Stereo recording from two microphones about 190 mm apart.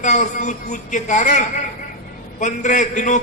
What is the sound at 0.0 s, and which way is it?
A man's voice, 40° left (ahead or behind).